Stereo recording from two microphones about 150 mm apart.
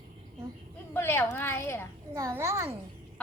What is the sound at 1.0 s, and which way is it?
Speech, 15° left (ahead or behind).